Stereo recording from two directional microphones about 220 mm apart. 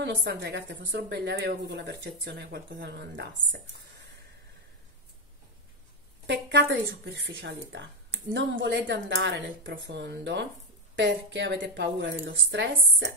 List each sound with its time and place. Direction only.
0.0 s speech: 55° right (ahead or behind)
6.2 s speech: 50° right (ahead or behind)